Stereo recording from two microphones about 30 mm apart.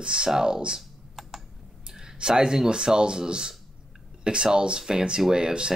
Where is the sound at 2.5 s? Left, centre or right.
Right.